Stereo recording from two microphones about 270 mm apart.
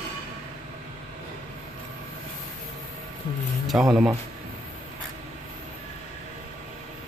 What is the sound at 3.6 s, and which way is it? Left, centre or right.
Speech, centre.